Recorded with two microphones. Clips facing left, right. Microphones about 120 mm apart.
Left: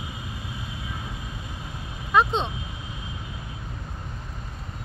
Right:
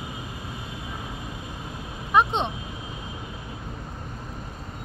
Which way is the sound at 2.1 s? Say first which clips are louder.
Even; 20° right (ahead or behind).